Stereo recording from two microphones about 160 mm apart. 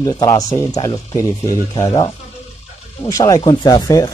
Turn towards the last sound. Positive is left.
turn(degrees=25)  # may be behind; listen again after turning